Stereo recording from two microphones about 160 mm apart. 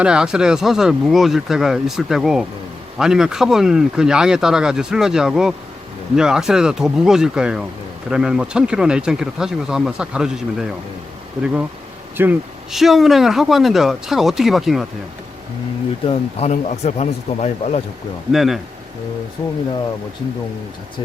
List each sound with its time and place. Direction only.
0.0 s speech: 5° right (ahead or behind)
12.1 s speech: 10° right (ahead or behind)
12.7 s speech: centre (ahead or behind)
16.0 s speech: 40° left (ahead or behind)
18.3 s speech: centre (ahead or behind)